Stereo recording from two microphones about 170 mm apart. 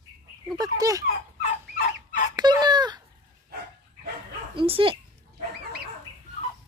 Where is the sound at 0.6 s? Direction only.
20° right (ahead or behind).